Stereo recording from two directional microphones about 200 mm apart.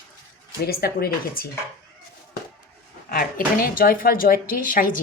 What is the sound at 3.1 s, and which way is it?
A woman's voice, 45° left (ahead or behind).